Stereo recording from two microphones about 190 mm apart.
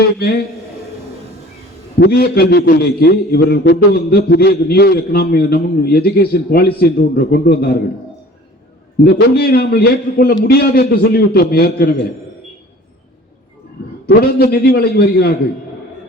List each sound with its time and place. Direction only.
0.2 s a man's voice: 55° left (ahead or behind)
2.0 s a man's voice: 55° left (ahead or behind)
9.0 s a man's voice: 55° left (ahead or behind)
14.1 s a man's voice: 55° left (ahead or behind)